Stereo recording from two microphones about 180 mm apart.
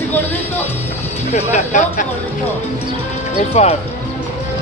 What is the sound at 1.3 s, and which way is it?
Speech, 45° left (ahead or behind).